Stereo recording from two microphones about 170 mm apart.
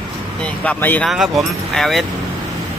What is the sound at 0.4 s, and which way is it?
Speech, 10° left (ahead or behind).